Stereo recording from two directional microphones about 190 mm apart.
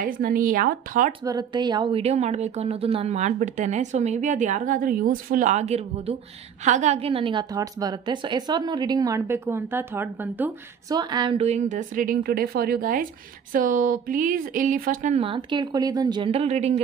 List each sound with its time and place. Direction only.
0.0 s speech: 45° right (ahead or behind)
1.2 s a woman's voice: 20° right (ahead or behind)
10.9 s a woman's voice: 20° right (ahead or behind)